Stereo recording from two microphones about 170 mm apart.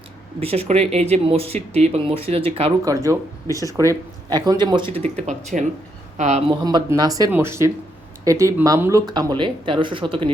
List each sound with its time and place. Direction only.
0.3 s speech: 35° right (ahead or behind)
2.8 s speech: 20° right (ahead or behind)
3.4 s speech: 20° left (ahead or behind)
4.3 s speech: 25° right (ahead or behind); by 6.4 s 45° right (ahead or behind)
6.5 s speech: 25° right (ahead or behind)